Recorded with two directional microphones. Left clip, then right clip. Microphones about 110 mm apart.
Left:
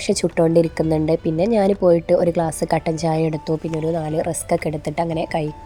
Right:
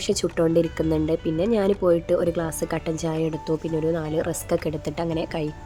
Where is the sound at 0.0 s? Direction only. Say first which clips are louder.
Left 4 dB; 20° left (ahead or behind).